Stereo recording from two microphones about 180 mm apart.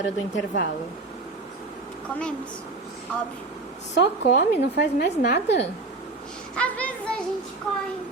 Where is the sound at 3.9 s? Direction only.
60° left (ahead or behind).